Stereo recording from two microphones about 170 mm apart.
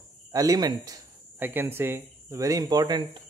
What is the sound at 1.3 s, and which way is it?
Speech, 10° right (ahead or behind).